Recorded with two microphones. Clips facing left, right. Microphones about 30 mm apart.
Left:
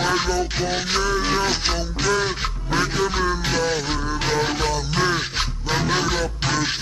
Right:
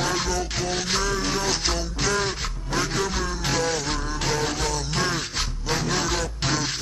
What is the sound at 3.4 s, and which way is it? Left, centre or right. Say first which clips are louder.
Music: left 2 dB; centre.